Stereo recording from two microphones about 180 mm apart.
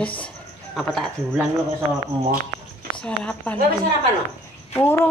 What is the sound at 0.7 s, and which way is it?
Speech, centre (ahead or behind).